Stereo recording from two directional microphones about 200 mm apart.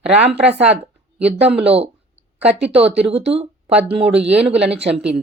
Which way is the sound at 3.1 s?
30° right (ahead or behind).